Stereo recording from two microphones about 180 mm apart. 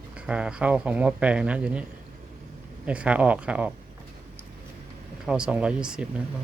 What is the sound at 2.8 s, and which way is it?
Speech, 5° right (ahead or behind).